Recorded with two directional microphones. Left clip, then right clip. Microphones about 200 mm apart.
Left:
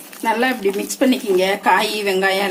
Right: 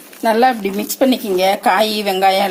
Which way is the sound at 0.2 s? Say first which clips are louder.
Right 5 dB; 35° right (ahead or behind).